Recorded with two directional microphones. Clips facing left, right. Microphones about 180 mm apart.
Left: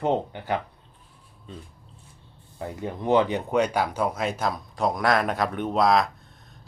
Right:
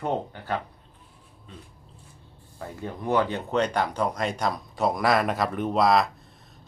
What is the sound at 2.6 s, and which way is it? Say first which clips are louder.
Speech: left 3 dB; 20° left (ahead or behind).